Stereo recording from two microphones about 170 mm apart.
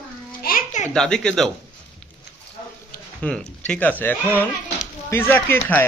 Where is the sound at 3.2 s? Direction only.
5° left (ahead or behind).